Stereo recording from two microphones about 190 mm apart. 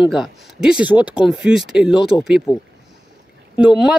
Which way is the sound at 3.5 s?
5° right (ahead or behind).